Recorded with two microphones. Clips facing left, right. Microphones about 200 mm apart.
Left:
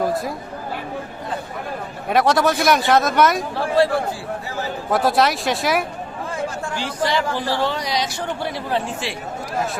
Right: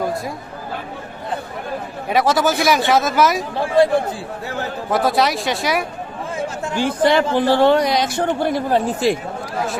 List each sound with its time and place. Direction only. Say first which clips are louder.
0.0 s a sound: left 1 dB; centre (ahead or behind)
2.0 s speech: even; centre (ahead or behind)
4.9 s speech: even; centre (ahead or behind)
6.7 s speech: right 7 dB; 55° right (ahead or behind)